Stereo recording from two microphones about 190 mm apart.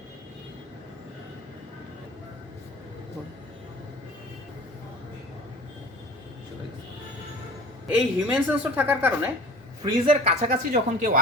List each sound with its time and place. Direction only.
7.9 s a woman's voice: 5° right (ahead or behind)
9.8 s speech: 30° right (ahead or behind)
10.5 s speech: 50° right (ahead or behind)